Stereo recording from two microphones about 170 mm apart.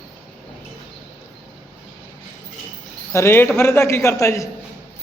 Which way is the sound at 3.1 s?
15° left (ahead or behind).